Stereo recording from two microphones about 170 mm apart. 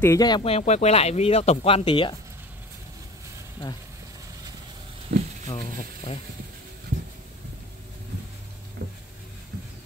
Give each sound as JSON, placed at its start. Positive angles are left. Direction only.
{"t": 0.0, "sound": "speech", "side_deg": 20}
{"t": 0.4, "sound": "speech", "side_deg": 35}
{"t": 5.1, "sound": "speech", "side_deg": -70}